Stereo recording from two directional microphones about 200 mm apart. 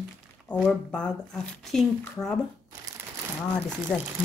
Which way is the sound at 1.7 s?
Centre (ahead or behind).